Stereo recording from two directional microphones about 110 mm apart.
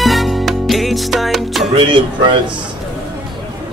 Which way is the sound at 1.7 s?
50° right (ahead or behind).